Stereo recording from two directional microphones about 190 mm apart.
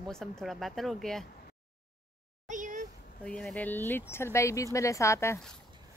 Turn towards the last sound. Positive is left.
turn(degrees=15)  # may be behind; listen again after turning